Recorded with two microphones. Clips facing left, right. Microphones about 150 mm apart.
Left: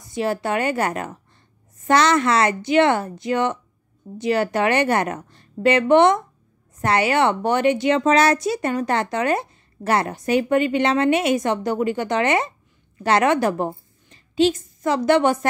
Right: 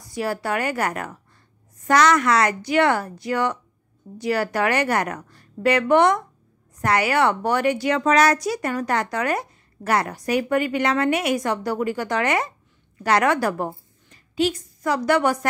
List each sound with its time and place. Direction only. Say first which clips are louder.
0.1 s a woman's voice: left 2 dB; 25° left (ahead or behind)